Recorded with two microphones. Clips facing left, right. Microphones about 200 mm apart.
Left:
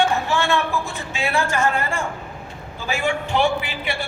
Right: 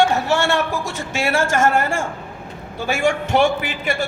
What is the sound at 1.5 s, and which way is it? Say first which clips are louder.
Speech: right 4 dB; 45° right (ahead or behind).